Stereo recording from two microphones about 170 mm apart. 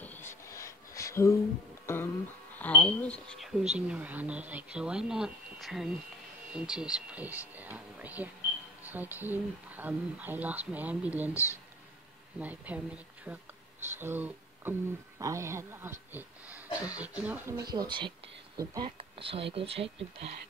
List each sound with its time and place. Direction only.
0.0 s a sound: 10° left (ahead or behind)
1.9 s speech: 15° left (ahead or behind); by 11.3 s 10° right (ahead or behind)
11.3 s speech: 15° left (ahead or behind)
12.4 s speech: 10° right (ahead or behind)
18.9 s speech: 35° right (ahead or behind)